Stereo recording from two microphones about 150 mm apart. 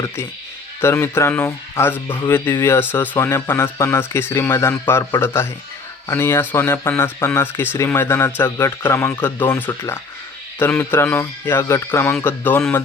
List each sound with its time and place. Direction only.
0.8 s speech: 15° left (ahead or behind)